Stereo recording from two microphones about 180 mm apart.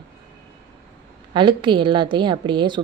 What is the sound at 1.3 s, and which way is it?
A woman's voice, 25° right (ahead or behind).